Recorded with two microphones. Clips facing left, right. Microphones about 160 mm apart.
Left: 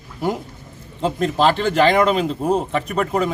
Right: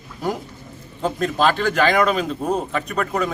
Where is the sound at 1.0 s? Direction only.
25° left (ahead or behind).